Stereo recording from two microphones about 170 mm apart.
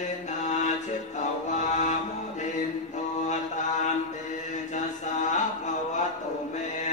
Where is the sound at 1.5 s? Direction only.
45° left (ahead or behind).